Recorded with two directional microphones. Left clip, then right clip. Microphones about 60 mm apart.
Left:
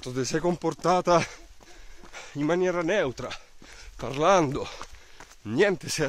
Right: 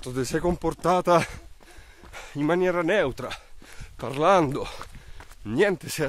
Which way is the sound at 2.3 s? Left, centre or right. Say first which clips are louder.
Right 2 dB; right.